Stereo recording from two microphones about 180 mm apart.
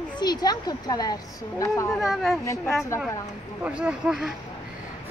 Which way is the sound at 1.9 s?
Centre (ahead or behind).